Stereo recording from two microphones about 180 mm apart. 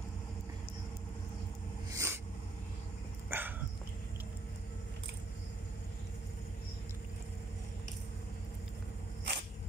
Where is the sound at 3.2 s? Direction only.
10° right (ahead or behind).